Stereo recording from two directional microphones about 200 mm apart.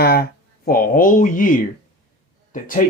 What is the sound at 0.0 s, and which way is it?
Speech, 50° left (ahead or behind).